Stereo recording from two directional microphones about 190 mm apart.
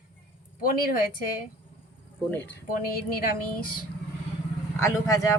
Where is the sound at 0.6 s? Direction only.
50° left (ahead or behind).